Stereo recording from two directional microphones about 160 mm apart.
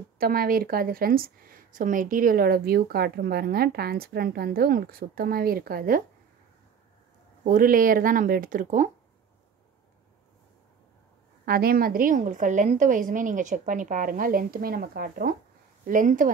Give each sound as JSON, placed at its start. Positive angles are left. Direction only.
{"t": 0.2, "sound": "a woman's voice", "side_deg": -65}
{"t": 7.4, "sound": "a woman's voice", "side_deg": -60}
{"t": 11.4, "sound": "a woman's voice", "side_deg": -70}
{"t": 15.8, "sound": "speech", "side_deg": -55}